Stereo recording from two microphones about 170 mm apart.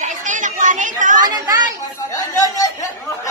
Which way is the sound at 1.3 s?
20° right (ahead or behind).